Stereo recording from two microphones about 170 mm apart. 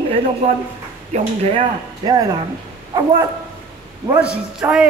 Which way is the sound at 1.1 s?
40° right (ahead or behind).